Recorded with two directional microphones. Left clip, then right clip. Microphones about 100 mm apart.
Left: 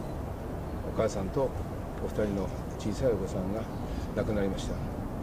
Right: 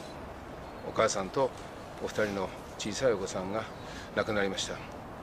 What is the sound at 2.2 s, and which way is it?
Speech, 45° right (ahead or behind).